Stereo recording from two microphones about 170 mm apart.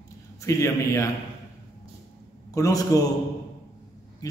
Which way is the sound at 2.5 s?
20° left (ahead or behind).